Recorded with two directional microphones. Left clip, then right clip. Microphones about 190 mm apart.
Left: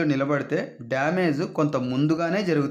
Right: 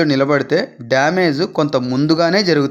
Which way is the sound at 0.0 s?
30° right (ahead or behind).